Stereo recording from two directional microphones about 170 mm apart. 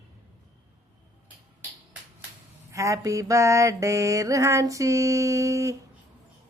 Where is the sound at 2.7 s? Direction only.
20° right (ahead or behind).